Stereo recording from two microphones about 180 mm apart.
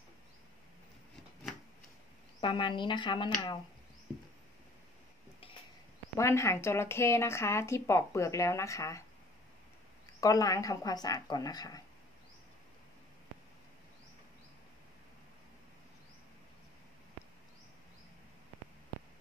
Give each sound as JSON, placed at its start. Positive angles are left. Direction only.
{"t": 2.4, "sound": "speech", "side_deg": 25}
{"t": 6.1, "sound": "speech", "side_deg": 15}
{"t": 10.2, "sound": "speech", "side_deg": 20}